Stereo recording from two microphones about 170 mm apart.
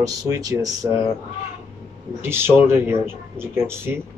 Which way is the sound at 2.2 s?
15° right (ahead or behind).